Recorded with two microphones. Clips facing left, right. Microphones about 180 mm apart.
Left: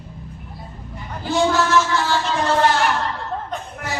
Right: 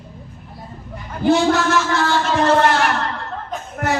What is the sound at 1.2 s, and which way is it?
Speech, 60° right (ahead or behind).